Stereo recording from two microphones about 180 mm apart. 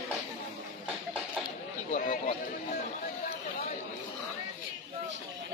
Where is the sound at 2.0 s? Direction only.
45° left (ahead or behind).